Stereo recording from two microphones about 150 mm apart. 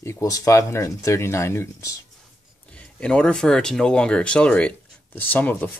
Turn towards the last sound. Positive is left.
turn(degrees=10)  # may be behind; listen again after turning